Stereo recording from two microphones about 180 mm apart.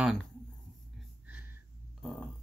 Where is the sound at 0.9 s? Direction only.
5° right (ahead or behind).